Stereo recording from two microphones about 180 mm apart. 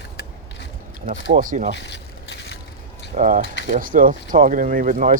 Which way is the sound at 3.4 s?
80° left.